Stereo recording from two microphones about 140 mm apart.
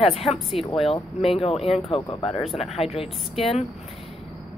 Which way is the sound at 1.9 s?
35° left (ahead or behind).